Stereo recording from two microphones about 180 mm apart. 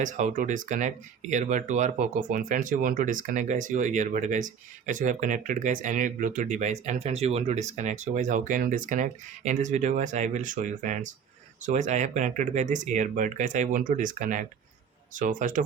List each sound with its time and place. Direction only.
0.0 s speech: 45° right (ahead or behind)